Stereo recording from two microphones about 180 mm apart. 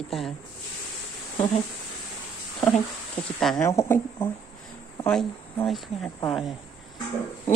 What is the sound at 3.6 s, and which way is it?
Speech, 15° left (ahead or behind).